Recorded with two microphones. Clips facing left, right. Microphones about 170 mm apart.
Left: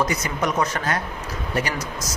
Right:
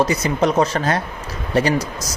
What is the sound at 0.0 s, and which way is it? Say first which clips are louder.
Speech: right 6 dB; 30° right (ahead or behind).